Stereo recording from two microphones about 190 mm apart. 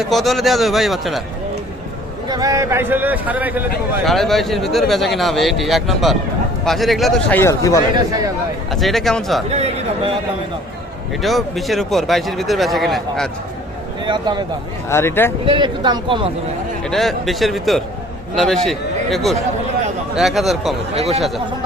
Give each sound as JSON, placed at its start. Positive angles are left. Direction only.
{"t": 0.0, "sound": "speech", "side_deg": 0}
{"t": 2.2, "sound": "a man's voice", "side_deg": -20}
{"t": 4.0, "sound": "speech", "side_deg": 0}
{"t": 7.3, "sound": "speech", "side_deg": 15}
{"t": 8.7, "sound": "speech", "side_deg": 0}
{"t": 9.5, "sound": "speech", "side_deg": -35}
{"t": 11.2, "sound": "speech", "side_deg": 0}
{"t": 14.0, "sound": "speech", "side_deg": -25}
{"t": 14.8, "sound": "speech", "side_deg": 15}
{"t": 15.4, "sound": "speech", "side_deg": -25}
{"t": 16.9, "sound": "speech", "side_deg": 0}
{"t": 20.9, "sound": "speech", "side_deg": -35}
{"t": 21.2, "sound": "speech", "side_deg": 0}